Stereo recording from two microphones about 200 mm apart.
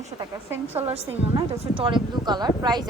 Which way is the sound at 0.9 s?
30° right (ahead or behind).